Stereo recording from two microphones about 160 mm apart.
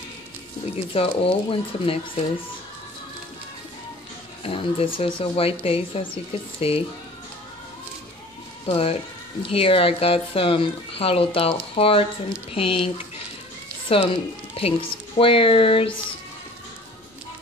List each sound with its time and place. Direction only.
0.7 s speech: 35° left (ahead or behind)
4.4 s speech: 35° left (ahead or behind)
8.6 s speech: 35° left (ahead or behind)